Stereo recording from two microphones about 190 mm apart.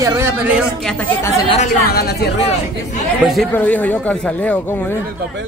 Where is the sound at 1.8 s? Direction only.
55° left (ahead or behind).